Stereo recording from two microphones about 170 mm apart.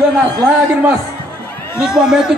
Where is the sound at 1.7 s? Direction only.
5° right (ahead or behind).